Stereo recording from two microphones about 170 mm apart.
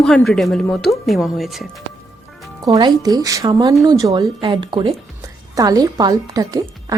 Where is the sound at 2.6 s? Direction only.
25° right (ahead or behind).